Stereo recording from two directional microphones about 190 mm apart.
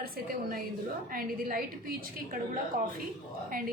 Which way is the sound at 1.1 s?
50° right (ahead or behind).